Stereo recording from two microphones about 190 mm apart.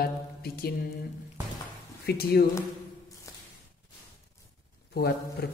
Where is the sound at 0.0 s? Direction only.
55° left (ahead or behind).